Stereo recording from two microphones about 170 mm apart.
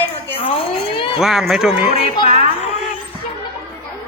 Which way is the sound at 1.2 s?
5° right (ahead or behind).